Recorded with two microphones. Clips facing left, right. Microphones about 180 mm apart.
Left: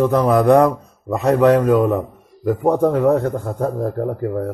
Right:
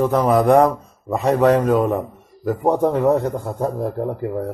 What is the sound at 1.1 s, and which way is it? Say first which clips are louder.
Speech: left 2 dB; 60° left (ahead or behind).